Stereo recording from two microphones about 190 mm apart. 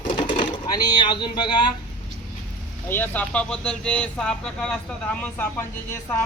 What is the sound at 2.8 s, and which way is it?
Speech, 10° left (ahead or behind).